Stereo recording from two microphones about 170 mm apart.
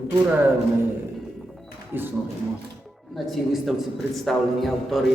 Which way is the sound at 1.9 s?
10° right (ahead or behind).